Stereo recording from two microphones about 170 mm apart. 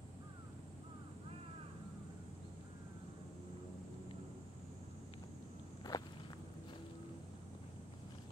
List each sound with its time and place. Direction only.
5.9 s walk: 25° left (ahead or behind)